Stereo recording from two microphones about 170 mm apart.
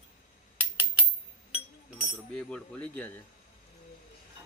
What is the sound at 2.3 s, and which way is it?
Speech, 5° left (ahead or behind).